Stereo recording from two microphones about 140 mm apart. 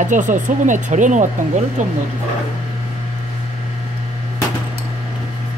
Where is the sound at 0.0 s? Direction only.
65° right (ahead or behind).